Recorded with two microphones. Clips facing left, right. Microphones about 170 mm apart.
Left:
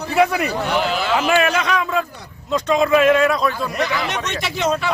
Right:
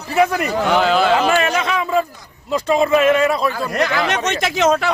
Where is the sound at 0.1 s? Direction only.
Centre (ahead or behind).